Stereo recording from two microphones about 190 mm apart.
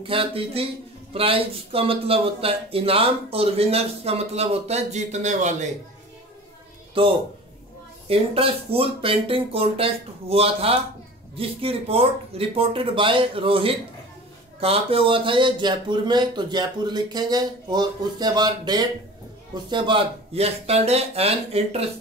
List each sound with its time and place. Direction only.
0.0 s speech: 30° right (ahead or behind)
8.1 s speech: 30° right (ahead or behind)